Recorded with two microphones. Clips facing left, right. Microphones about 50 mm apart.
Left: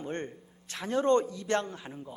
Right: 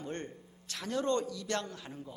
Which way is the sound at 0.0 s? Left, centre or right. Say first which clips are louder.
Left 4 dB; left.